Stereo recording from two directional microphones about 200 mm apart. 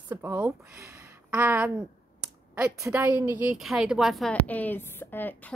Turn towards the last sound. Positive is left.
turn(degrees=10)  # may be behind; listen again after turning